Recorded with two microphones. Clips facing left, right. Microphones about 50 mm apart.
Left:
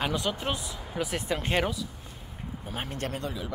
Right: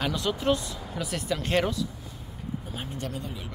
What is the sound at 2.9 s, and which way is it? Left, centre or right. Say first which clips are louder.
Speech: left 2 dB; left.